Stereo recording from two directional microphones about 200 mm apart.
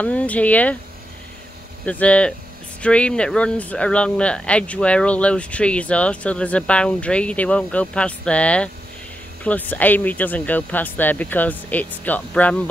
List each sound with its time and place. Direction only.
0.0 s speech: 5° left (ahead or behind)
1.9 s speech: 5° left (ahead or behind)